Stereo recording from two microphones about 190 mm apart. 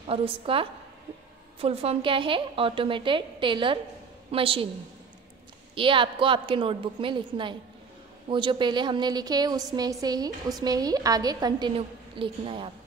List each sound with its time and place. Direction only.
0.0 s a woman's voice: 30° right (ahead or behind)
5.8 s a woman's voice: 25° right (ahead or behind)